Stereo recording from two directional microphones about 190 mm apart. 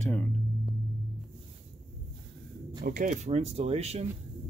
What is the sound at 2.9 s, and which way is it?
Speech, 45° right (ahead or behind).